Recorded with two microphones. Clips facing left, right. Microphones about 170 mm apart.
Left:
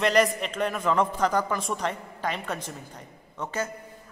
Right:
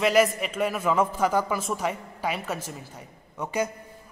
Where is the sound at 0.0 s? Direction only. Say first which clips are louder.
Right 1 dB; 5° right (ahead or behind).